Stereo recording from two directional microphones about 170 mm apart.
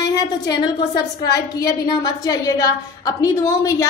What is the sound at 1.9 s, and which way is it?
A woman's voice, 20° left (ahead or behind).